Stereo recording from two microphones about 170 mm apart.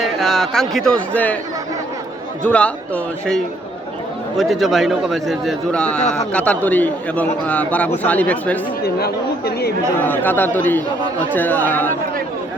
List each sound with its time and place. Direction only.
0.0 s speech: centre (ahead or behind)
2.4 s a man's voice: 5° left (ahead or behind)
8.8 s speech: 70° left (ahead or behind)
10.0 s a man's voice: 10° left (ahead or behind)